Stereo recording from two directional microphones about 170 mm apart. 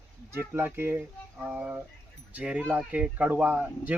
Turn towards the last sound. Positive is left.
turn(degrees=-10)  # may be behind; listen again after turning